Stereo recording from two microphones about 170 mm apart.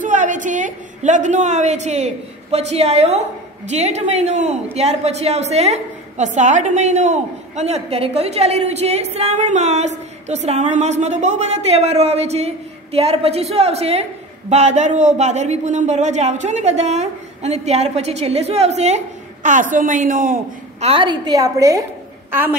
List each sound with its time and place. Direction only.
0.0 s a woman's voice: 45° right (ahead or behind)
20.8 s a woman's voice: 30° right (ahead or behind); by 22.6 s 10° right (ahead or behind)